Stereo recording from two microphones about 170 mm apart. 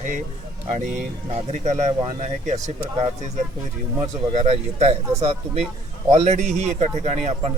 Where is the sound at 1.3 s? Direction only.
45° right (ahead or behind).